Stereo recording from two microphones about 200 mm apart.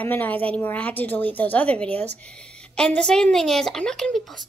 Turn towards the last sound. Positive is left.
turn(degrees=0)  # may be behind; listen again after turning